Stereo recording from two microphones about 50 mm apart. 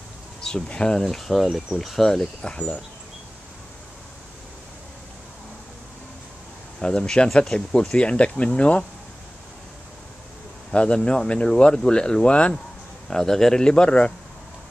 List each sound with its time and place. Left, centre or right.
0.4 s bee: centre
0.7 s speech: centre
1.0 s speech: centre
2.4 s speech: left
6.8 s speech: centre
10.7 s speech: left
13.1 s speech: centre